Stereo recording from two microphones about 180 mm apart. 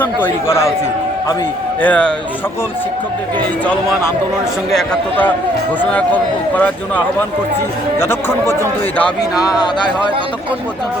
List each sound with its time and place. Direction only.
0.0 s a man's voice: 10° left (ahead or behind)
1.8 s a man's voice: 5° left (ahead or behind)
4.7 s a man's voice: 5° left (ahead or behind)
9.3 s speech: 20° left (ahead or behind)